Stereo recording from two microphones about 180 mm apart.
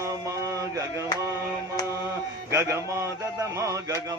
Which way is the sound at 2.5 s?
15° right (ahead or behind).